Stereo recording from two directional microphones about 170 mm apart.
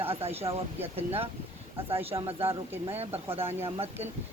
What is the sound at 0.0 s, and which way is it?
Speech, 35° right (ahead or behind).